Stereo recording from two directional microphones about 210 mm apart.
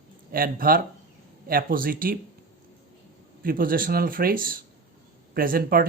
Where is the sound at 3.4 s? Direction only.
45° right (ahead or behind).